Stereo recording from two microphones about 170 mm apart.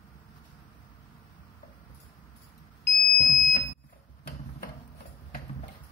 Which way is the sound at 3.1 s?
50° left (ahead or behind).